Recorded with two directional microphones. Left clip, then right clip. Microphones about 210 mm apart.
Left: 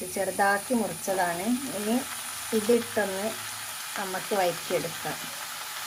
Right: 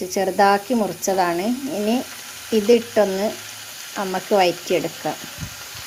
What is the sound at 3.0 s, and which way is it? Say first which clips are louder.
Speech: right 10 dB; 35° right (ahead or behind).